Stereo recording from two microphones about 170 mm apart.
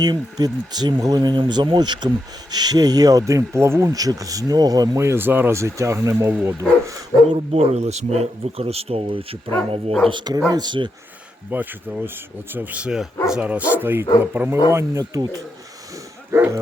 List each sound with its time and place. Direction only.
0.0 s speech: 25° right (ahead or behind)
7.3 s speech: 35° right (ahead or behind)
11.5 s speech: 10° right (ahead or behind)
16.3 s speech: 15° right (ahead or behind)